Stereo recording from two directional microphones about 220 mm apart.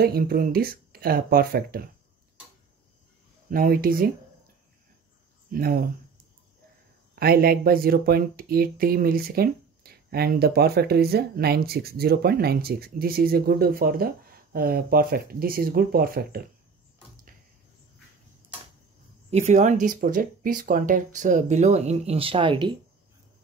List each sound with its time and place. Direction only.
0.0 s speech: 45° right (ahead or behind)
3.4 s speech: 40° right (ahead or behind)
5.5 s speech: 40° right (ahead or behind)
7.2 s speech: 45° right (ahead or behind)
19.3 s speech: 35° right (ahead or behind)